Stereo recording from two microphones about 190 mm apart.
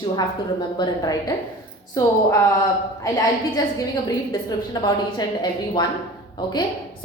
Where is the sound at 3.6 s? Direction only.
20° left (ahead or behind).